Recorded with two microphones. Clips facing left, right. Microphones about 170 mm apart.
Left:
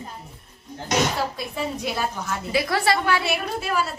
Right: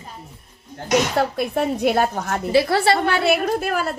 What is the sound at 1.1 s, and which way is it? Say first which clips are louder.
A woman's voice: right 7 dB; 60° right (ahead or behind).